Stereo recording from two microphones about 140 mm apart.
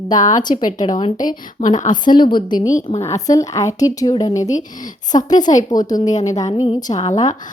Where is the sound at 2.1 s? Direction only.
35° left (ahead or behind).